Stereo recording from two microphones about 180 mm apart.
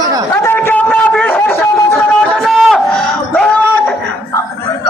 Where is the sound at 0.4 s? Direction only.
10° left (ahead or behind).